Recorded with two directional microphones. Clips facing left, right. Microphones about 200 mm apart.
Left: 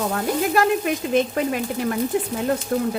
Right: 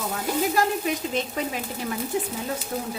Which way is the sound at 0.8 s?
55° left (ahead or behind).